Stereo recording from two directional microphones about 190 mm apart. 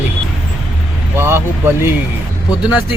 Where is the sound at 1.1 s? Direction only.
10° right (ahead or behind).